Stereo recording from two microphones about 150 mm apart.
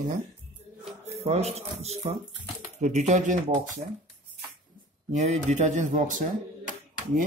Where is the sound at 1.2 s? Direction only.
45° right (ahead or behind).